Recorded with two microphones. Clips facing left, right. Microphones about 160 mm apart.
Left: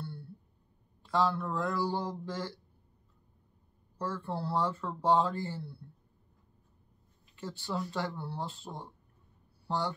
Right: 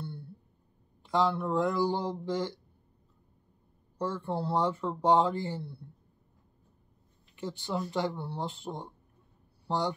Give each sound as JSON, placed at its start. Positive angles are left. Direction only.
{"t": 1.0, "sound": "speech", "side_deg": -15}
{"t": 4.0, "sound": "speech", "side_deg": -20}
{"t": 7.3, "sound": "speech", "side_deg": -15}